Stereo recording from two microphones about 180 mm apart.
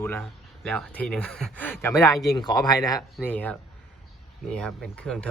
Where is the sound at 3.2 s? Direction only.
10° left (ahead or behind).